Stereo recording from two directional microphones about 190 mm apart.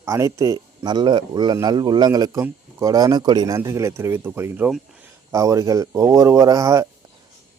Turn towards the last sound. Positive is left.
turn(degrees=-15)  # may be behind; listen again after turning